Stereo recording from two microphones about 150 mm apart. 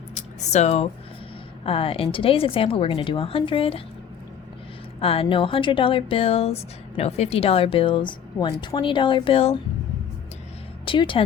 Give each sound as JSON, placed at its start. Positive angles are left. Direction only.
{"t": 0.2, "sound": "speech", "side_deg": 50}
{"t": 4.9, "sound": "speech", "side_deg": 40}
{"t": 10.8, "sound": "a woman's voice", "side_deg": 35}